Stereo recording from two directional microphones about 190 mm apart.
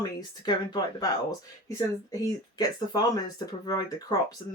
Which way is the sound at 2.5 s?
20° left (ahead or behind).